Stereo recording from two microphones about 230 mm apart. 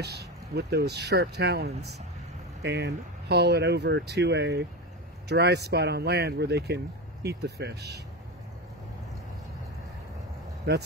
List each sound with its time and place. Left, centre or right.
0.0 s speech: right
10.7 s speech: right